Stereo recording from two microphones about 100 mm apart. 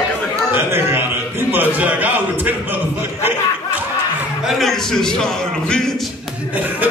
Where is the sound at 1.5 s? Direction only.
15° right (ahead or behind).